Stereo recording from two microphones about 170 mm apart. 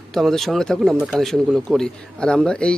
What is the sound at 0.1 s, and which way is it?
Speech, centre (ahead or behind).